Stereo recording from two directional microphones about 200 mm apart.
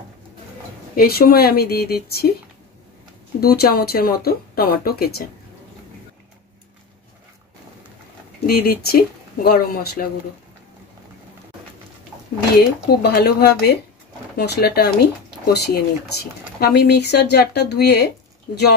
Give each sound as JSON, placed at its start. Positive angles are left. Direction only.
{"t": 0.9, "sound": "speech", "side_deg": 50}
{"t": 3.3, "sound": "speech", "side_deg": 50}
{"t": 8.5, "sound": "speech", "side_deg": 50}
{"t": 12.5, "sound": "speech", "side_deg": 50}